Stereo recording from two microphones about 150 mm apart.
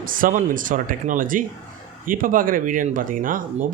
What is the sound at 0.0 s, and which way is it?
Speech, 65° right (ahead or behind).